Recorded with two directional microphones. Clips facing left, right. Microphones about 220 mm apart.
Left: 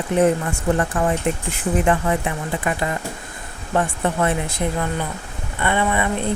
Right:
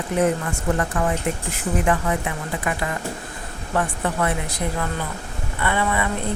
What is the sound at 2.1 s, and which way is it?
Speech, 30° left (ahead or behind).